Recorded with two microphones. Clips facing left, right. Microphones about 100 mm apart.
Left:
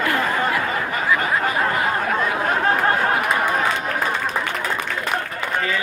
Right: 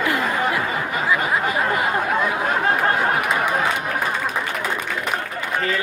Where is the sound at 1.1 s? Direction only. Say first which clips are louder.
Even; 15° right (ahead or behind).